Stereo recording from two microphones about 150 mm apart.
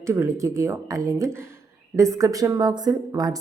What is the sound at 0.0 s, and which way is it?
Speech, 20° right (ahead or behind).